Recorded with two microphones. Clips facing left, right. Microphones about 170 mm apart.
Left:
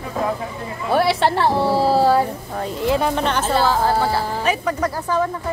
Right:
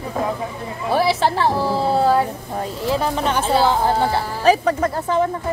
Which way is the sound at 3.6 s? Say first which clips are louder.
Even; 20° right (ahead or behind).